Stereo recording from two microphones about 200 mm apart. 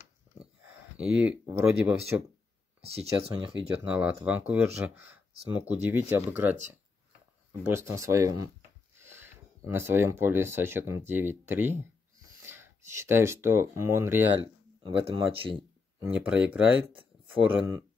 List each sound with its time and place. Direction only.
0.9 s speech: 5° right (ahead or behind)
3.8 s speech: 5° right (ahead or behind)
14.9 s speech: 25° right (ahead or behind)
16.0 s speech: 10° right (ahead or behind)